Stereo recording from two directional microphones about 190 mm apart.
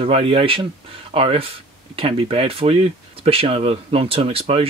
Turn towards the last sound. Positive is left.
turn(degrees=-30)  # may be behind; listen again after turning